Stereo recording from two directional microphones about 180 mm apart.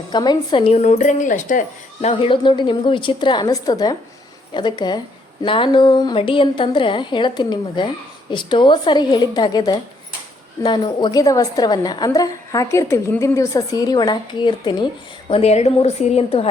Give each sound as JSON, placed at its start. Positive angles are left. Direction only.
{"t": 0.1, "sound": "a woman's voice", "side_deg": 25}